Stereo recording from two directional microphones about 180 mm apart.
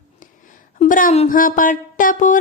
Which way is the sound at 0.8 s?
50° left (ahead or behind).